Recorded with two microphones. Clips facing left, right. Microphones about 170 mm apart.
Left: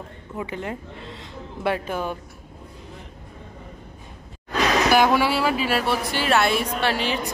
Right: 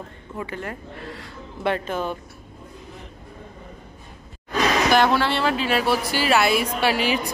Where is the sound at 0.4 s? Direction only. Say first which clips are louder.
Left 1 dB; 15° left (ahead or behind).